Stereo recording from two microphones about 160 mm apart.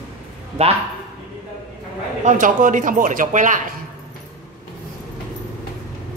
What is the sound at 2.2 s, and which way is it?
Speech, 50° right (ahead or behind).